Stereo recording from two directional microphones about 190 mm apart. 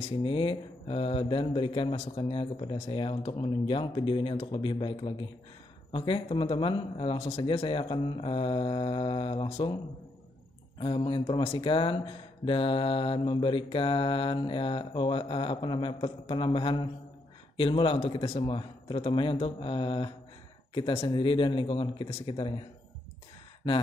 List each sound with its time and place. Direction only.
0.1 s speech: 25° left (ahead or behind)
10.8 s speech: 25° left (ahead or behind)